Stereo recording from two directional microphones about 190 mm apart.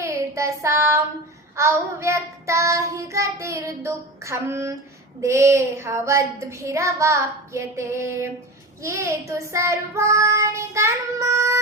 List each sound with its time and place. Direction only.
0.0 s child singing: 15° right (ahead or behind)